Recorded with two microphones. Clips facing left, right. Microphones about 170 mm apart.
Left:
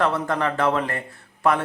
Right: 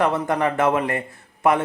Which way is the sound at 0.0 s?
15° right (ahead or behind).